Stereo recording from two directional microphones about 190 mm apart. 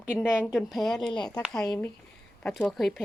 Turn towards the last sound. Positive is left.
turn(degrees=0)  # may be behind; listen again after turning